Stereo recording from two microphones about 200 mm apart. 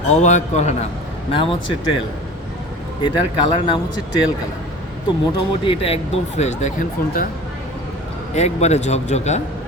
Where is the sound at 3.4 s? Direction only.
25° left (ahead or behind).